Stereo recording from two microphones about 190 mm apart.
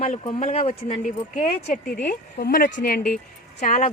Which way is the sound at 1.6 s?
45° left (ahead or behind).